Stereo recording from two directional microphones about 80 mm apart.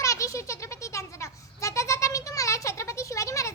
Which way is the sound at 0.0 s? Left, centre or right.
Left.